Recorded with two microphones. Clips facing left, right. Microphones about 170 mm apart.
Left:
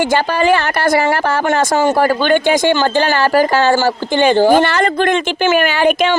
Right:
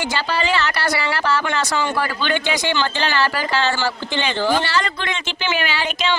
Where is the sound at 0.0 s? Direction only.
50° left (ahead or behind).